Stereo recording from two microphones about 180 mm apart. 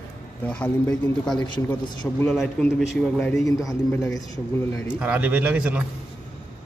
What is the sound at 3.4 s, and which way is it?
Speech, 20° left (ahead or behind).